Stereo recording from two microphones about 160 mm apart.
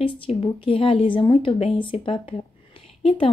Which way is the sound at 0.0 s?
35° left (ahead or behind).